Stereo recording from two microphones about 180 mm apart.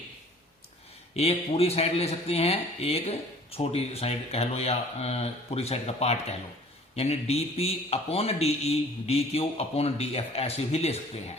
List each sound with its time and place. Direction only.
1.1 s speech: 35° left (ahead or behind)